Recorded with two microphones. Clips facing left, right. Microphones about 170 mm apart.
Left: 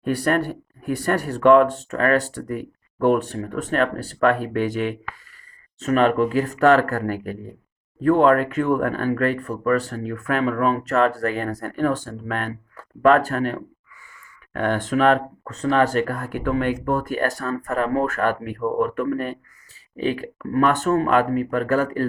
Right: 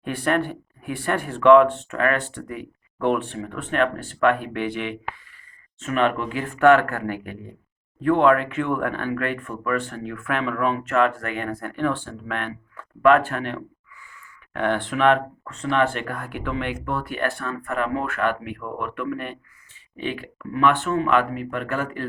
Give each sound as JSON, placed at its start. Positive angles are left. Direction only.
{"t": 0.0, "sound": "speech", "side_deg": 40}